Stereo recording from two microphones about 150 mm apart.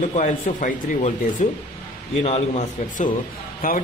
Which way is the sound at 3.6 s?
70° left (ahead or behind).